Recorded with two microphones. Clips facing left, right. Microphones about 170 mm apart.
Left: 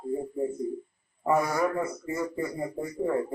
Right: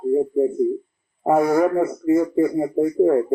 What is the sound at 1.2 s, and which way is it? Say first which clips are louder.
A man's voice: right 8 dB; 60° right (ahead or behind).